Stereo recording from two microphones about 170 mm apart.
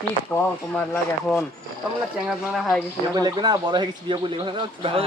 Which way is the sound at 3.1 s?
25° right (ahead or behind).